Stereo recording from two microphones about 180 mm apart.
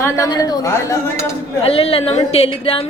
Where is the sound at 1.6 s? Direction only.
35° left (ahead or behind).